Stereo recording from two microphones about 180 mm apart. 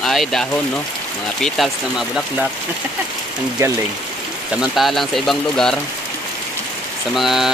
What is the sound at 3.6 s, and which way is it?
Speech, 15° right (ahead or behind).